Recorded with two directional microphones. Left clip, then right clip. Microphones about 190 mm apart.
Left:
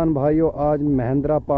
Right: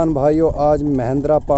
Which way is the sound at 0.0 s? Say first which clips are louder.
Right 4 dB; 15° right (ahead or behind).